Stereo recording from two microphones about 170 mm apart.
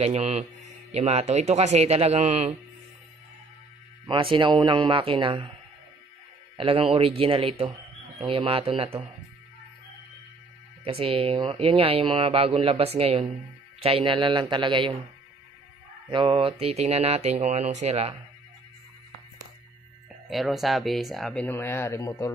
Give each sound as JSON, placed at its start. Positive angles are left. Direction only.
{"t": 0.0, "sound": "speech", "side_deg": -40}
{"t": 4.0, "sound": "speech", "side_deg": -30}
{"t": 6.5, "sound": "speech", "side_deg": -30}
{"t": 10.8, "sound": "speech", "side_deg": -35}
{"t": 16.1, "sound": "speech", "side_deg": -30}
{"t": 20.2, "sound": "speech", "side_deg": 0}
{"t": 21.5, "sound": "speech", "side_deg": 15}